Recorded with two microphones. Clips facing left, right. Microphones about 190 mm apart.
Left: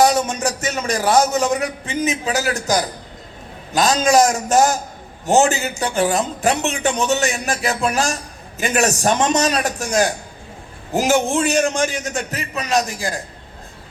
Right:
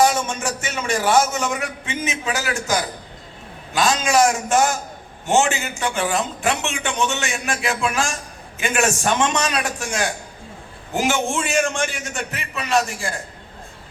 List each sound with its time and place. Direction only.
0.0 s a man's voice: 40° left (ahead or behind)